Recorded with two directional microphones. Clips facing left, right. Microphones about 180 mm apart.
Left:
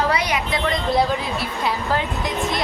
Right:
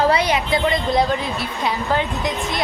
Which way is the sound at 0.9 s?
5° left (ahead or behind).